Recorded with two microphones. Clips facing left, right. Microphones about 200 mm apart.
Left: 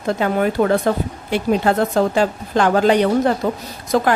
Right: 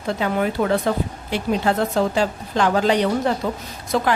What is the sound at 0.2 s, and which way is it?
A woman's voice, 50° left (ahead or behind).